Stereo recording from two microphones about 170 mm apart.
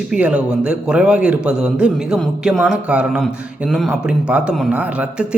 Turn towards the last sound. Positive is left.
turn(degrees=-5)  # may be behind; listen again after turning